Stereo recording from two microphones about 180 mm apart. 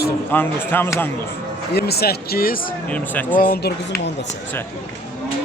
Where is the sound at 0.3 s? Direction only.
10° left (ahead or behind).